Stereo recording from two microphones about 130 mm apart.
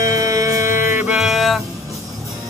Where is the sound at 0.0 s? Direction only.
25° right (ahead or behind).